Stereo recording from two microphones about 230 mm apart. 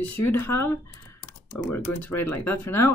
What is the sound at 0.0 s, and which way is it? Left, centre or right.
Speech, centre.